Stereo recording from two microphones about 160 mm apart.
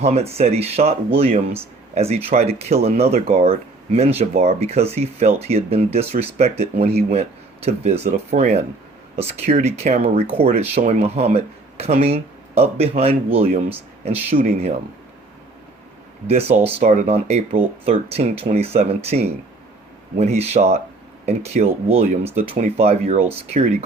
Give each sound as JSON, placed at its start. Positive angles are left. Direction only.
{"t": 0.0, "sound": "speech", "side_deg": -40}
{"t": 14.3, "sound": "speech", "side_deg": -50}
{"t": 16.2, "sound": "speech", "side_deg": -40}